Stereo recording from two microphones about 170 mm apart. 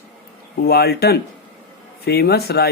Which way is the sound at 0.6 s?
65° left (ahead or behind).